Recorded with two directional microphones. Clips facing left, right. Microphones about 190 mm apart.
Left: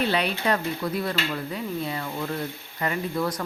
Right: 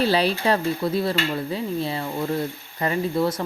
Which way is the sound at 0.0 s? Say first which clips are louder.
Right 4 dB; 35° right (ahead or behind).